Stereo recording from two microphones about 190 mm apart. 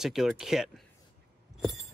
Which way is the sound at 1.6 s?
Centre (ahead or behind).